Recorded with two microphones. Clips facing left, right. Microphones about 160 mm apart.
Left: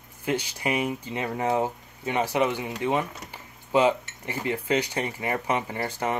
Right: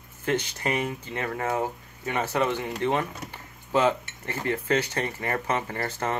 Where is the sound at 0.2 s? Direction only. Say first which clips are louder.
Right 1 dB; 10° left (ahead or behind).